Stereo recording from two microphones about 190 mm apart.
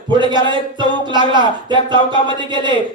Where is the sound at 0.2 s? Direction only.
25° right (ahead or behind).